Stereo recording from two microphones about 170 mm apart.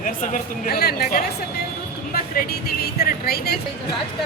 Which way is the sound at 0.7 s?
65° left (ahead or behind).